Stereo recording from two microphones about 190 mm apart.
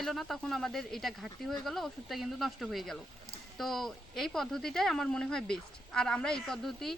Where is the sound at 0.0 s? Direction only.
Centre (ahead or behind).